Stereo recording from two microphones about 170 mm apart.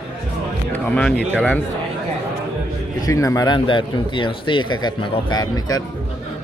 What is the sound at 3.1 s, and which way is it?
Speech, 20° left (ahead or behind).